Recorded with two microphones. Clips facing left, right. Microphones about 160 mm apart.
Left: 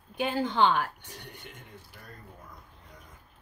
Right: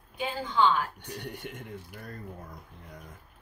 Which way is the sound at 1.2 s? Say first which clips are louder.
Right 8 dB; 65° right (ahead or behind).